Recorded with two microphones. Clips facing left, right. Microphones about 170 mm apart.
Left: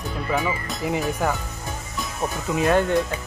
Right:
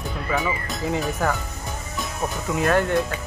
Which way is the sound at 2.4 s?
20° left (ahead or behind).